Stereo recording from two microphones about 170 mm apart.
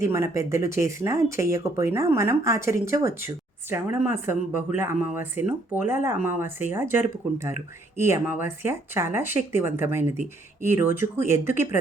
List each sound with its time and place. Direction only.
0.0 s speech: 15° right (ahead or behind)